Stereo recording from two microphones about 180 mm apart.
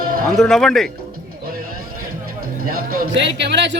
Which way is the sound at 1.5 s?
55° right (ahead or behind).